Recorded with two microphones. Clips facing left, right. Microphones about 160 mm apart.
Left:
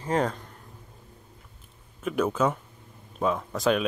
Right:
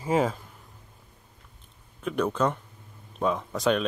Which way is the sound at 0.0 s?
5° right (ahead or behind).